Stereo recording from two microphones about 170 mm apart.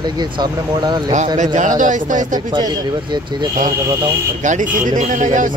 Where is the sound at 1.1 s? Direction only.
45° right (ahead or behind).